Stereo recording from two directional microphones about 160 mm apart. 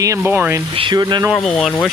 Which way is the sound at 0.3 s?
10° right (ahead or behind).